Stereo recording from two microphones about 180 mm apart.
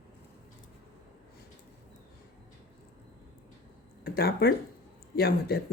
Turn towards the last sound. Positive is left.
turn(degrees=60)  # may be behind; listen again after turning